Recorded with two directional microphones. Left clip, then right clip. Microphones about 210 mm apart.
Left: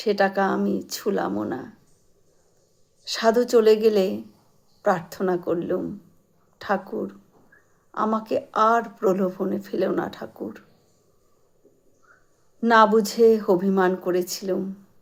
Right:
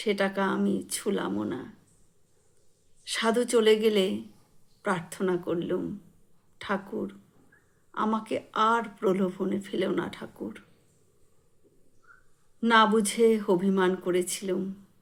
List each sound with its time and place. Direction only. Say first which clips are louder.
0.1 s speech: left 6 dB; 25° right (ahead or behind)
3.1 s speech: left 6 dB; 25° right (ahead or behind)
12.5 s speech: left 5 dB; 25° right (ahead or behind)